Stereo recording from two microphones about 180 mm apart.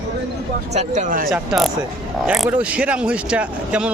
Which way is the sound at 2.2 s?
5° right (ahead or behind).